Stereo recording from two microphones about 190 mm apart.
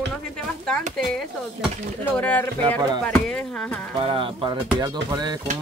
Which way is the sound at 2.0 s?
10° left (ahead or behind).